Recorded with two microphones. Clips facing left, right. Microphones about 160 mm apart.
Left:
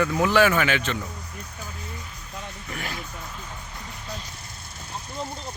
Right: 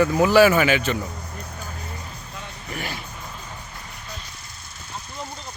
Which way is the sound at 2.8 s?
Centre (ahead or behind).